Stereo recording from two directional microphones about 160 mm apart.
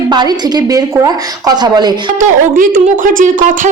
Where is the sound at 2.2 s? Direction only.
55° right (ahead or behind).